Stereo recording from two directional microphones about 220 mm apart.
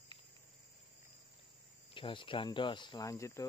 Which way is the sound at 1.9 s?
20° left (ahead or behind).